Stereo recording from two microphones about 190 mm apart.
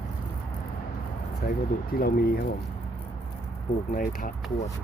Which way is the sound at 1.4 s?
50° left (ahead or behind).